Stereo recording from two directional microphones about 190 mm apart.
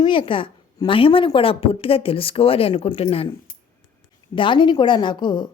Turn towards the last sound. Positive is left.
turn(degrees=25)  # may be behind; listen again after turning